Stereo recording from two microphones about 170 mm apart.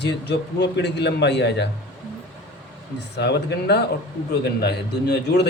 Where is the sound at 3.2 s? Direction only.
80° left.